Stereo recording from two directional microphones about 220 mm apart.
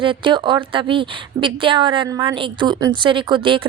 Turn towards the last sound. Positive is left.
turn(degrees=-20)  # may be behind; listen again after turning